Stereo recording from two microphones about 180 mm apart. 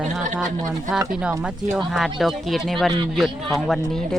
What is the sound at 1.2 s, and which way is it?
Speech, 5° right (ahead or behind).